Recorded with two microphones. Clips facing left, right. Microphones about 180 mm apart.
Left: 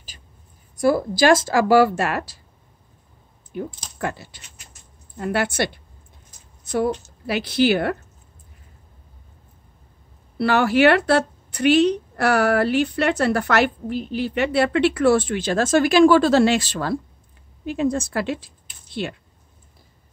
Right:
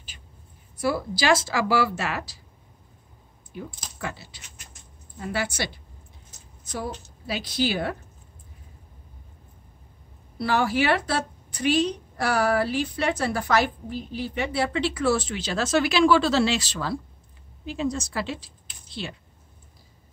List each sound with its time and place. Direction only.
0.7 s speech: 50° left (ahead or behind)
4.0 s a woman's voice: 50° left (ahead or behind)
10.3 s a woman's voice: 70° left (ahead or behind)